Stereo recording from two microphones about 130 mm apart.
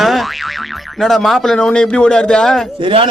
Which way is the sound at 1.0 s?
Centre (ahead or behind).